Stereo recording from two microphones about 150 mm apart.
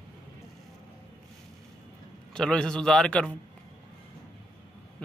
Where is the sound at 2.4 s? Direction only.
5° left (ahead or behind).